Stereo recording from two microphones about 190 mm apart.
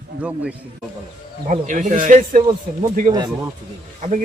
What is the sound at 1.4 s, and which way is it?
Speech, 40° right (ahead or behind).